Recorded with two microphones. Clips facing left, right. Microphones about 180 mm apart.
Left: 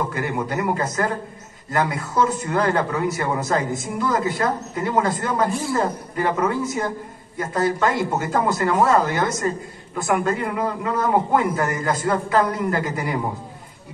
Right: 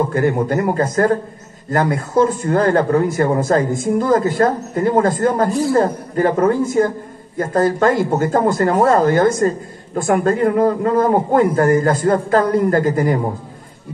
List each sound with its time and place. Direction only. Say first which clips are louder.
0.1 s a man's voice: right 8 dB; 45° right (ahead or behind)